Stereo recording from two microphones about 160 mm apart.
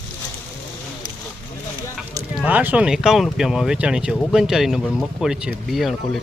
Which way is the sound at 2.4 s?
10° right (ahead or behind).